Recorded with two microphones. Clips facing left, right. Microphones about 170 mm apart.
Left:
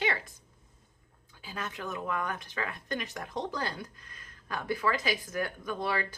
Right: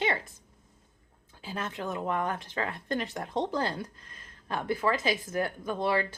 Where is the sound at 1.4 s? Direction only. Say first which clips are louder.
Right 3 dB; 30° right (ahead or behind).